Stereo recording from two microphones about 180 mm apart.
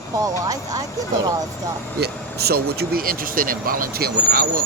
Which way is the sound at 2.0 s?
60° right (ahead or behind).